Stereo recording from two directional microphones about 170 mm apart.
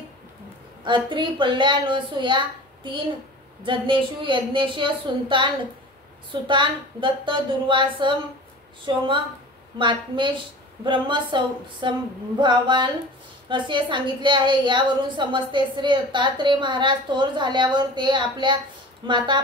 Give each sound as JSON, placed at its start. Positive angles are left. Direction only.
{"t": 0.8, "sound": "a woman's voice", "side_deg": -30}